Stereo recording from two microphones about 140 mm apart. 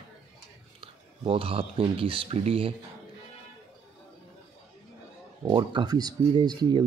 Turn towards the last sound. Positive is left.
turn(degrees=-30)  # may be behind; listen again after turning